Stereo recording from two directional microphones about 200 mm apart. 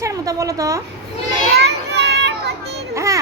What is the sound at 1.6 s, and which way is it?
Children playing, 55° right (ahead or behind).